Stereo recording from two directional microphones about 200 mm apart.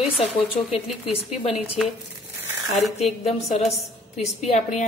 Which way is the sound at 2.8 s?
35° left (ahead or behind).